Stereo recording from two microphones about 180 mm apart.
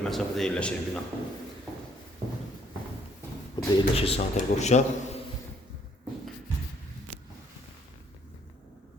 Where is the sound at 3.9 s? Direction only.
35° left (ahead or behind).